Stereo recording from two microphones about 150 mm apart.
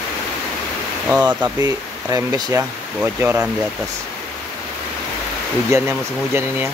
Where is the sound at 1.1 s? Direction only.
10° right (ahead or behind).